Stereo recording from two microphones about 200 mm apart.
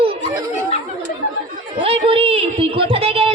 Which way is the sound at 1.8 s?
30° right (ahead or behind).